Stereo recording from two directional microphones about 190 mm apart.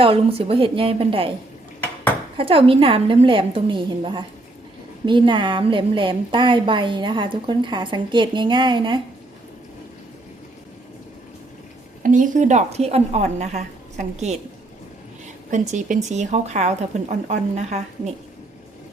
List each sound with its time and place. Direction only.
0.0 s a woman's voice: 30° right (ahead or behind)
2.4 s a woman's voice: 30° right (ahead or behind)
12.0 s a woman's voice: 45° right (ahead or behind)
15.4 s a woman's voice: 40° right (ahead or behind)